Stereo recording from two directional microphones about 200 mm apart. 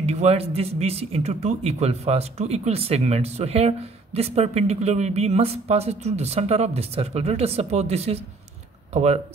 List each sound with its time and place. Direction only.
0.0 s speech: 30° right (ahead or behind)